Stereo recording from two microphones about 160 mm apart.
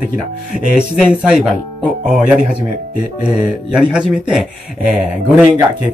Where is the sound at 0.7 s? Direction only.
5° right (ahead or behind).